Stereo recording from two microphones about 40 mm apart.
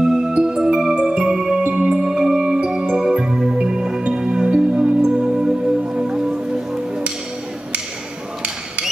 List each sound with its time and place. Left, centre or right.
0.0 s music: centre
1.6 s music: right
1.9 s music: centre